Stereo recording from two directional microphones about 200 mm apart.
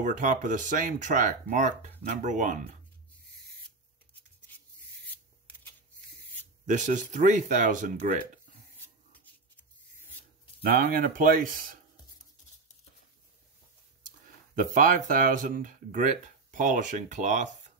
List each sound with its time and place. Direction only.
0.0 s speech: 40° right (ahead or behind)
4.5 s rub: 10° left (ahead or behind)
6.6 s speech: 40° right (ahead or behind)
9.1 s rub: 10° left (ahead or behind)
10.6 s speech: 50° right (ahead or behind)
14.5 s speech: 45° right (ahead or behind)